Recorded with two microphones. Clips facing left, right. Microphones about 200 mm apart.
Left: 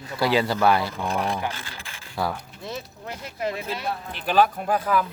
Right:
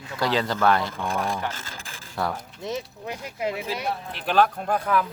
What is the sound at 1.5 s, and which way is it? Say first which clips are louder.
Speech: left 1 dB; 45° right (ahead or behind).